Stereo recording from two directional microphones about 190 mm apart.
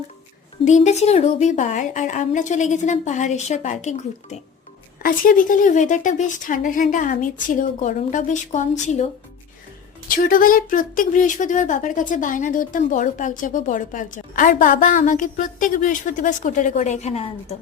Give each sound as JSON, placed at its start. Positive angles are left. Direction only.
{"t": 0.6, "sound": "speech", "side_deg": 40}
{"t": 10.1, "sound": "speech", "side_deg": 45}